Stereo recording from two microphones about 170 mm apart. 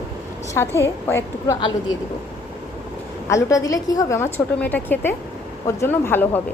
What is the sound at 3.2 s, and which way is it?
A woman's voice, 20° left (ahead or behind).